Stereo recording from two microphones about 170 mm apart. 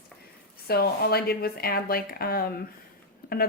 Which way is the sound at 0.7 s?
65° left (ahead or behind).